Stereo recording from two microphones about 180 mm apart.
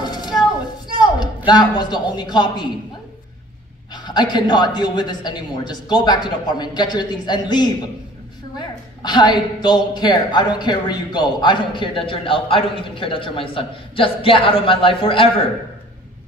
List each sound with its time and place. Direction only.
0.0 s a sound: 25° left (ahead or behind)
0.9 s a woman's voice: 25° left (ahead or behind)
3.9 s speech: 25° left (ahead or behind)